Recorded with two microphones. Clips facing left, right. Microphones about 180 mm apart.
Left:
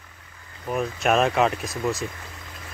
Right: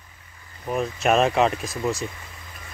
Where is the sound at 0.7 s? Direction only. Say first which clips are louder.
Right 1 dB; centre (ahead or behind).